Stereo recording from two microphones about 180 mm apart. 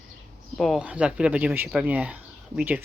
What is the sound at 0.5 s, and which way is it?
Speech, centre (ahead or behind).